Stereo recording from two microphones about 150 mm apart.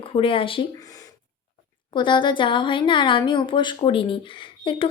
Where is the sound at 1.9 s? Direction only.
30° left (ahead or behind).